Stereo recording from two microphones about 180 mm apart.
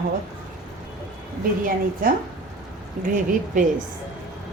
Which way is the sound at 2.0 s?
50° right (ahead or behind).